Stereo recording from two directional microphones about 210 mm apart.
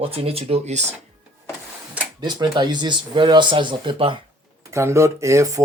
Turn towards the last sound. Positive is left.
turn(degrees=-15)  # may be behind; listen again after turning